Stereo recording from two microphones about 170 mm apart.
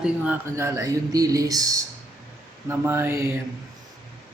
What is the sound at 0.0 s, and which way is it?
Speech, 10° right (ahead or behind).